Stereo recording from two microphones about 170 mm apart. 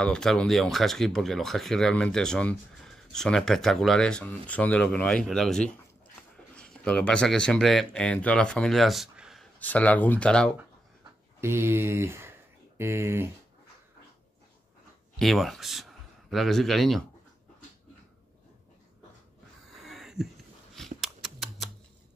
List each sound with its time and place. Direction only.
0.0 s speech: 5° left (ahead or behind)
9.6 s speech: 10° left (ahead or behind)
11.4 s speech: 15° right (ahead or behind)
15.1 s speech: centre (ahead or behind)
19.7 s a sound: centre (ahead or behind)